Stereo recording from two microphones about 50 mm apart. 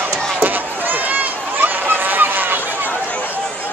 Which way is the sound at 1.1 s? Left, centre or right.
Right.